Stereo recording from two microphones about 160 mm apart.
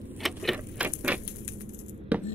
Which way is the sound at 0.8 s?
10° right (ahead or behind).